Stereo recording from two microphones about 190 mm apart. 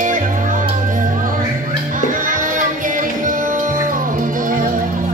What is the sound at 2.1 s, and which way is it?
Music, 45° right (ahead or behind).